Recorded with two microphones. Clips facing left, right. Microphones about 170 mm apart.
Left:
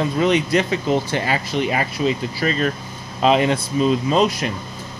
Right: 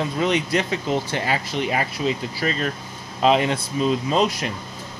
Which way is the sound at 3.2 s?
90° left.